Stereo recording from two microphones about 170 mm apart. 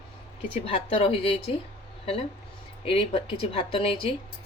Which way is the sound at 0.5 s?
35° left (ahead or behind).